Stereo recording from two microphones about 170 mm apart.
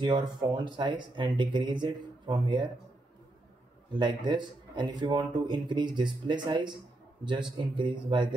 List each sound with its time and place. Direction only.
0.0 s a man's voice: 25° right (ahead or behind)
3.9 s a man's voice: 25° right (ahead or behind)